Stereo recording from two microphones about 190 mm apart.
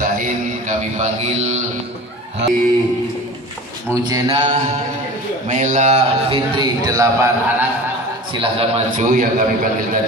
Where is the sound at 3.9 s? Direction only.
20° right (ahead or behind).